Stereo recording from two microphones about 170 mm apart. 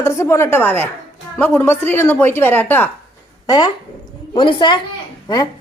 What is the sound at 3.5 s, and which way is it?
A woman's voice, 25° left (ahead or behind).